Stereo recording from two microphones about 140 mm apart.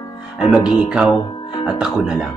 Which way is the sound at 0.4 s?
5° right (ahead or behind).